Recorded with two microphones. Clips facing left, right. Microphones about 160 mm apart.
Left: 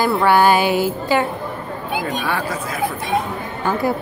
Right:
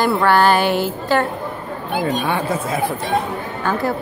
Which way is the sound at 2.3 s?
25° right (ahead or behind).